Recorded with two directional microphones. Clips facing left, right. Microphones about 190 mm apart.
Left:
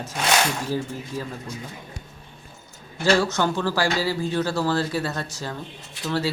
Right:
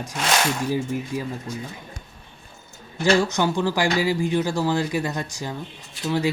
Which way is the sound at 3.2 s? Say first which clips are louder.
Right 1 dB; 15° right (ahead or behind).